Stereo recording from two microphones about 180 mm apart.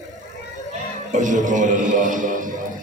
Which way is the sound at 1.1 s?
45° right (ahead or behind).